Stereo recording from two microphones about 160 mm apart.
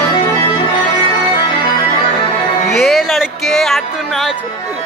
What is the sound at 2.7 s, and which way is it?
Music, centre (ahead or behind).